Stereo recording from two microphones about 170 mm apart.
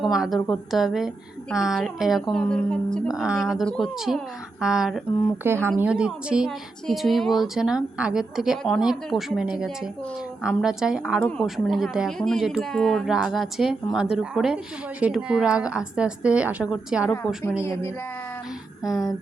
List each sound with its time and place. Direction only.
0.0 s speech: centre (ahead or behind)
5.4 s speech: 15° right (ahead or behind)
17.6 s speech: 15° left (ahead or behind)
18.8 s speech: centre (ahead or behind)